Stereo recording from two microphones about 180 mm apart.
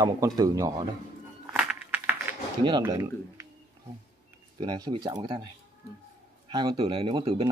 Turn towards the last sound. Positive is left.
turn(degrees=-30)  # may be behind; listen again after turning